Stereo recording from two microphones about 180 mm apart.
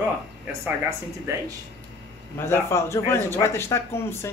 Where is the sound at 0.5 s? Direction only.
15° right (ahead or behind).